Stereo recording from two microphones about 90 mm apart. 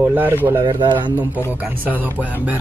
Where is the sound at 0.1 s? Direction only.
20° right (ahead or behind).